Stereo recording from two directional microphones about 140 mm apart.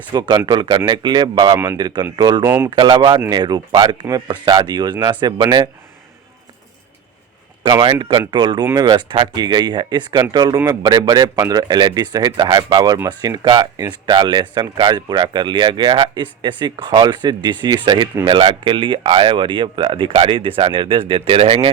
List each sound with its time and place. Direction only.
0.1 s speech: 30° right (ahead or behind)
1.5 s a man's voice: 15° right (ahead or behind)
2.1 s speech: 30° right (ahead or behind)
7.8 s speech: 35° right (ahead or behind)